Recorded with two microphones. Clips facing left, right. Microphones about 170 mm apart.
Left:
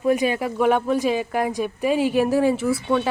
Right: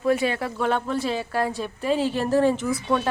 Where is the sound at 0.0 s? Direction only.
15° left (ahead or behind).